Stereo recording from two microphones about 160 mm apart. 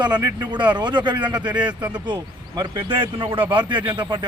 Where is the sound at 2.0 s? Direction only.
30° right (ahead or behind).